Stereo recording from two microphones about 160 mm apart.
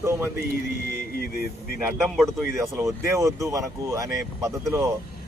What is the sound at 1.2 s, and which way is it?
Speech, 70° left (ahead or behind).